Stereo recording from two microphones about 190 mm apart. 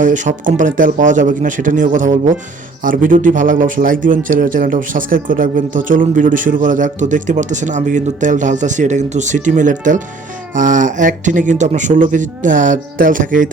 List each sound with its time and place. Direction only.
0.0 s speech: 40° right (ahead or behind)